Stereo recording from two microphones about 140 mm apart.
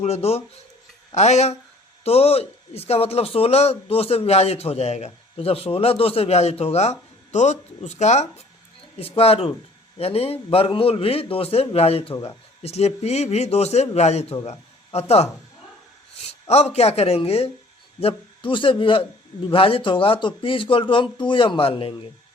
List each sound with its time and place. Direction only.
0.0 s a man's voice: 50° left (ahead or behind)
9.0 s a man's voice: 45° left (ahead or behind)
12.1 s speech: 25° left (ahead or behind)
12.6 s a man's voice: 50° left (ahead or behind)
16.5 s a man's voice: 50° left (ahead or behind)